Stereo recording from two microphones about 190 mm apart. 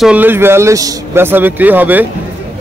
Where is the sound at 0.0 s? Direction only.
10° right (ahead or behind).